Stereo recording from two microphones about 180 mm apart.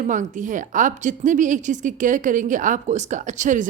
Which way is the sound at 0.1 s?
45° right (ahead or behind).